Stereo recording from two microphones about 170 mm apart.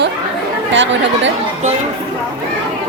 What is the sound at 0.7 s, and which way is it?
Speech, 90° right.